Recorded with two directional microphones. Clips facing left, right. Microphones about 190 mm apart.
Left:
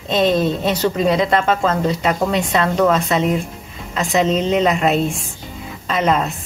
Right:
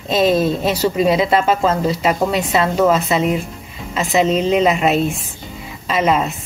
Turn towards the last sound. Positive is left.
turn(degrees=-5)  # may be behind; listen again after turning